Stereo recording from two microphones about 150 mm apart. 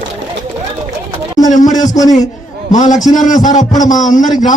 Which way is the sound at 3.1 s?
55° left (ahead or behind).